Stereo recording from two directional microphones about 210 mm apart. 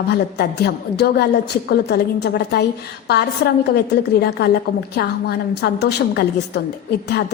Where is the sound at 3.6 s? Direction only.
50° left (ahead or behind).